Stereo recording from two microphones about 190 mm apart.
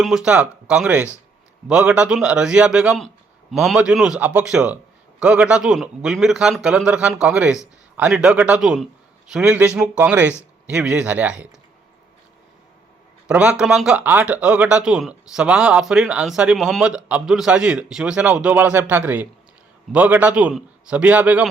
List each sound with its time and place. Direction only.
0.0 s a man's voice: 5° right (ahead or behind)
13.2 s a man's voice: 5° right (ahead or behind)